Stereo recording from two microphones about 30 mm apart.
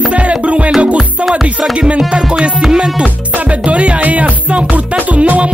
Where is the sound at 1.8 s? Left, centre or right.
Right.